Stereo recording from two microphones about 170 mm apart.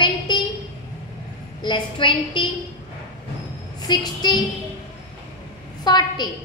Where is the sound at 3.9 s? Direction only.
25° left (ahead or behind).